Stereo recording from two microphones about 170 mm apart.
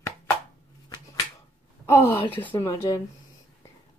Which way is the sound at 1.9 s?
15° left (ahead or behind).